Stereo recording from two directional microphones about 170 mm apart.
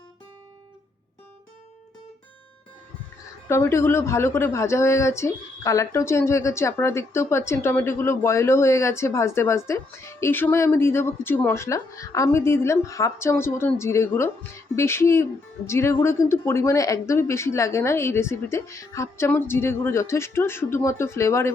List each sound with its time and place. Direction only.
3.5 s speech: 15° left (ahead or behind)